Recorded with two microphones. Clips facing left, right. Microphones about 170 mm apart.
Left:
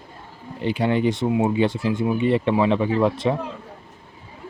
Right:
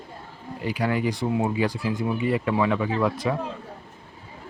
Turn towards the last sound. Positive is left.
turn(degrees=25)  # may be behind; listen again after turning